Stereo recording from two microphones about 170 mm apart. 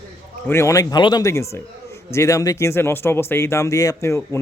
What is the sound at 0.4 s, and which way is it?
Speech, 15° left (ahead or behind).